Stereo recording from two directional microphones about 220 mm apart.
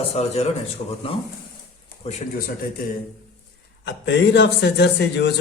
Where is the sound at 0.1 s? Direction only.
30° left (ahead or behind).